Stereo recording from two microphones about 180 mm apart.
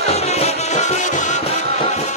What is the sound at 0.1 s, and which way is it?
Music, 35° left (ahead or behind).